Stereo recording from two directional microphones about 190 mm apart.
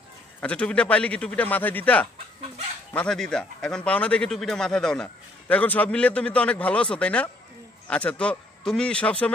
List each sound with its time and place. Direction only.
0.4 s speech: 5° left (ahead or behind)